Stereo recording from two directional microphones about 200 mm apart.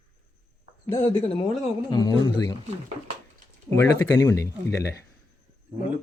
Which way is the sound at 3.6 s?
10° left (ahead or behind).